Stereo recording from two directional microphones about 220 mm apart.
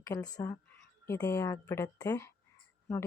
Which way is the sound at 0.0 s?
15° left (ahead or behind).